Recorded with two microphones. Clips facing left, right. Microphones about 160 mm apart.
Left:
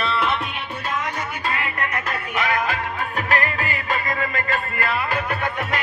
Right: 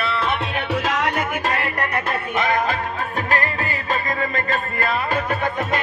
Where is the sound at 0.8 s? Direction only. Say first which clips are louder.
Right 2 dB; 90° right.